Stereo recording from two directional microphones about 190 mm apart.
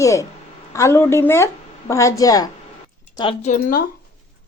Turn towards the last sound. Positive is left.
turn(degrees=50)  # may be behind; listen again after turning